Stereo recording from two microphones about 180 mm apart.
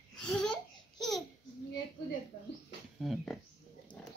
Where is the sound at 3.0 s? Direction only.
Centre (ahead or behind).